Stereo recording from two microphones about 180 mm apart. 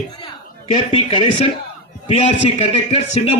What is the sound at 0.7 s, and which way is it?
Speech, 30° left (ahead or behind).